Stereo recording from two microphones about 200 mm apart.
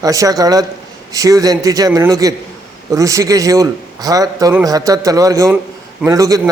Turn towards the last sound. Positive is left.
turn(degrees=-20)  # may be behind; listen again after turning